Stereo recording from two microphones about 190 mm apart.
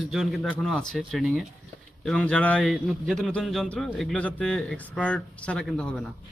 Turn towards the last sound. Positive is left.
turn(degrees=5)  # may be behind; listen again after turning